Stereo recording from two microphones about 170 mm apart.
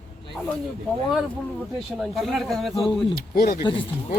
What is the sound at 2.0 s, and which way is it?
Speech, centre (ahead or behind).